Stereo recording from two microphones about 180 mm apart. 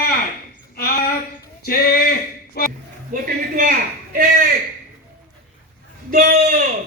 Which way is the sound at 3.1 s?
50° right (ahead or behind).